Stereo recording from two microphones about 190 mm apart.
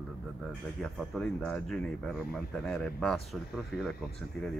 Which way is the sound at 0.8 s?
Centre (ahead or behind).